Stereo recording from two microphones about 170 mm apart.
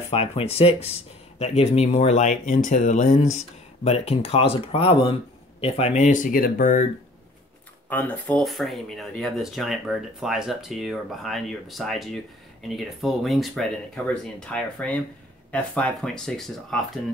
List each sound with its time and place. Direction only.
0.1 s speech: 35° left (ahead or behind)
7.9 s speech: 10° left (ahead or behind)